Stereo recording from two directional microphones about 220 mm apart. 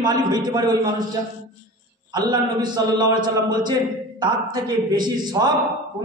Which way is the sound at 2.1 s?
20° right (ahead or behind).